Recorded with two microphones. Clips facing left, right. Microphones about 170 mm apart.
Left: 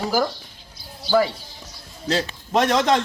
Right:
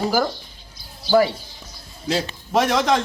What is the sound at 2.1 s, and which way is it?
Speech, 5° right (ahead or behind).